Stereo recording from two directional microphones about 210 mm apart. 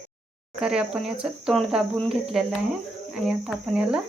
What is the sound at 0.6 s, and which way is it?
Speech, 5° right (ahead or behind).